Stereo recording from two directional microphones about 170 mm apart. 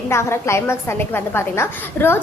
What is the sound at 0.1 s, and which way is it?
A woman's voice, 15° left (ahead or behind).